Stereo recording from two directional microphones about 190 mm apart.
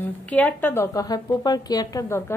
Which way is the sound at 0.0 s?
10° left (ahead or behind).